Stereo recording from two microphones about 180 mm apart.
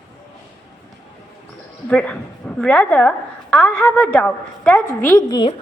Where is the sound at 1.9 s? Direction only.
5° left (ahead or behind).